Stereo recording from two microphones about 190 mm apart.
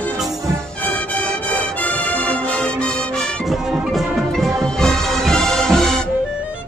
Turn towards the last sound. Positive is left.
turn(degrees=0)  # may be behind; listen again after turning